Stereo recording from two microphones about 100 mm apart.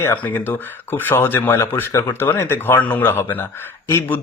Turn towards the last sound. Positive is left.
turn(degrees=25)  # may be behind; listen again after turning